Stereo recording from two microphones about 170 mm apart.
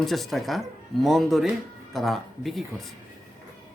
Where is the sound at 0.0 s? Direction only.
Centre (ahead or behind).